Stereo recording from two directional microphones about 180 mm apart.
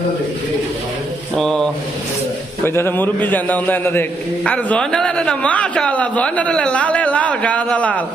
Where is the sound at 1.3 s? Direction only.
5° left (ahead or behind).